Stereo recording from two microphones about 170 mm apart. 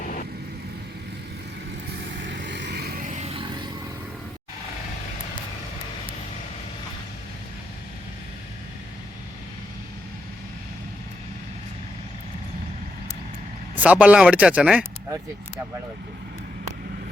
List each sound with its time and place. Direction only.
2.2 s vehicle: 90° right
3.0 s music: 45° right (ahead or behind)
13.7 s speech: 10° right (ahead or behind)